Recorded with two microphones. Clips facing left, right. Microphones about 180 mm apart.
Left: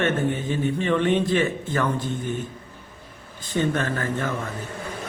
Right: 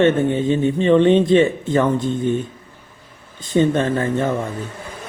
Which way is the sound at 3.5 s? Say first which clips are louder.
Right 7 dB; 25° right (ahead or behind).